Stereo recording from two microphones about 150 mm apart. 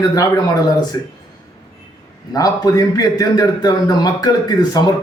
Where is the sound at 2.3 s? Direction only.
25° left (ahead or behind).